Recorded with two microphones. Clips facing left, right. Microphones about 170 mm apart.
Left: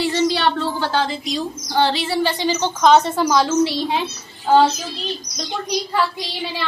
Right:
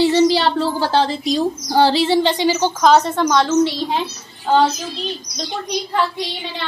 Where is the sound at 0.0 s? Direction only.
25° right (ahead or behind).